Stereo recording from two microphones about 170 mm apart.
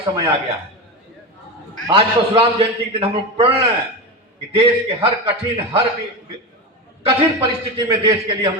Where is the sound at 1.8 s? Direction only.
30° right (ahead or behind).